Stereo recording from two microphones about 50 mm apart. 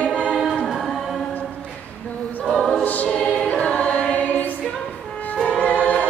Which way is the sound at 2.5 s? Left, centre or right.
Centre.